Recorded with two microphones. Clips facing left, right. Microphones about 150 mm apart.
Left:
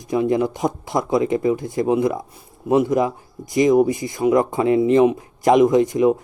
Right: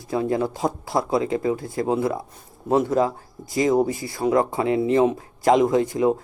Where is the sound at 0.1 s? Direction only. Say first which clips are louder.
Left 4 dB; 20° left (ahead or behind).